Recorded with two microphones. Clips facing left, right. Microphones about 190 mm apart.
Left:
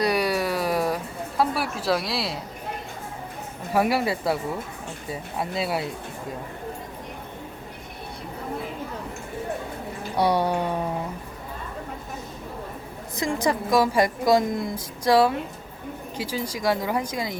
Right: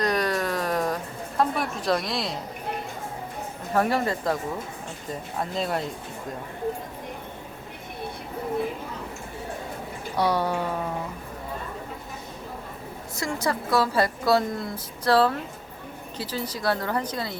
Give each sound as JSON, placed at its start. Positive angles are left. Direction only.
{"t": 0.0, "sound": "a sound", "side_deg": 10}
{"t": 3.7, "sound": "a woman's voice", "side_deg": 10}
{"t": 10.2, "sound": "a woman's voice", "side_deg": 15}
{"t": 13.1, "sound": "a woman's voice", "side_deg": 15}